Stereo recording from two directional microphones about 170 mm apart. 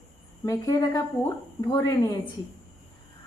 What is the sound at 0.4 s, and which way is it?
Speech, 20° left (ahead or behind).